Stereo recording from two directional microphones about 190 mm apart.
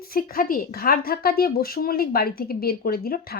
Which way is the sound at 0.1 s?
50° left (ahead or behind).